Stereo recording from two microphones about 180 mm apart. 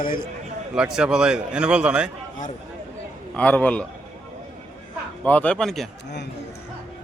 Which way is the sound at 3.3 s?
5° left (ahead or behind).